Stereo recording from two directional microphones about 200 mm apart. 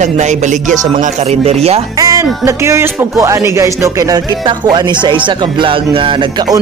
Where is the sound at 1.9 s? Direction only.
15° right (ahead or behind).